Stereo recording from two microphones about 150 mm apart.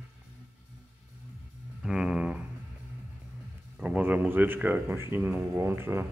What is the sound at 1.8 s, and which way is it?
Music, 5° right (ahead or behind).